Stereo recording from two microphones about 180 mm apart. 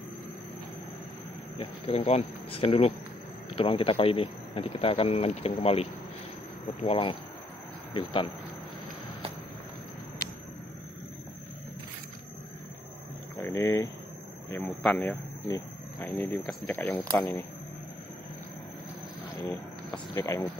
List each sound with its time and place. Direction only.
1.6 s speech: 30° left (ahead or behind)
13.4 s speech: 15° left (ahead or behind)
19.9 s speech: 15° left (ahead or behind)